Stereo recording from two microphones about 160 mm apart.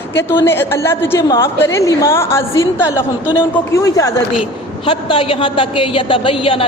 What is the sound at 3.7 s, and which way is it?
Speech, 20° left (ahead or behind).